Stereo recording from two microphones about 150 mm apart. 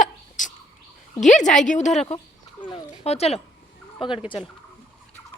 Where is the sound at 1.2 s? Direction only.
55° left (ahead or behind).